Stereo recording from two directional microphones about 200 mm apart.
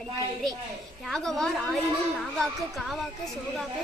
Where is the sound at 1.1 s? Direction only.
Centre (ahead or behind).